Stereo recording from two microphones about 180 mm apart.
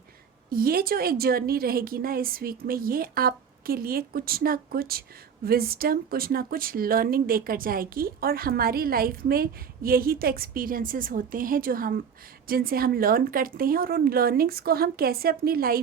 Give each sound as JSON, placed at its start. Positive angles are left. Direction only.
{"t": 0.5, "sound": "speech", "side_deg": -55}